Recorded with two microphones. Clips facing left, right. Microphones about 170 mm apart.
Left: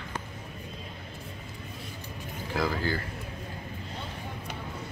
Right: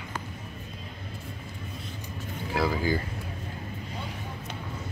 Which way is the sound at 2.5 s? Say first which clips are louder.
Right 3 dB; 10° right (ahead or behind).